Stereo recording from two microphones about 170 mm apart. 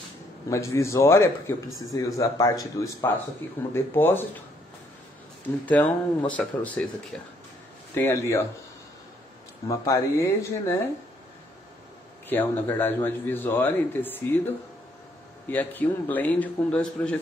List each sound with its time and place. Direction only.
0.5 s a man's voice: 15° left (ahead or behind)
5.7 s a man's voice: 10° left (ahead or behind)
9.7 s a man's voice: 20° left (ahead or behind)
12.3 s a man's voice: 10° left (ahead or behind)